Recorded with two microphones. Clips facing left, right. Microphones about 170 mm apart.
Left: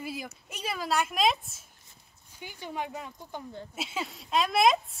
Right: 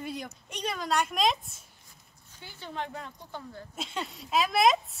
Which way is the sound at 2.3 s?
15° left (ahead or behind).